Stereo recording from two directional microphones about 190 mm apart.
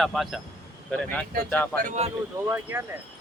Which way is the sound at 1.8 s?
35° right (ahead or behind).